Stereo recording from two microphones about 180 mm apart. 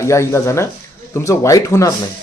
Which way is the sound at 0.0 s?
15° left (ahead or behind).